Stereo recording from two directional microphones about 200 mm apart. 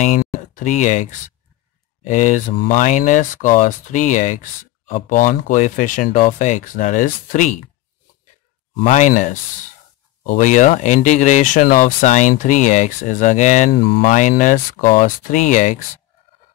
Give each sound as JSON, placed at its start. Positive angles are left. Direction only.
{"t": 0.0, "sound": "speech", "side_deg": 40}
{"t": 2.0, "sound": "speech", "side_deg": 40}
{"t": 8.8, "sound": "speech", "side_deg": 40}